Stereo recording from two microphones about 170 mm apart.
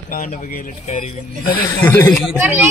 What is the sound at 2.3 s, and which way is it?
Speech, 10° right (ahead or behind).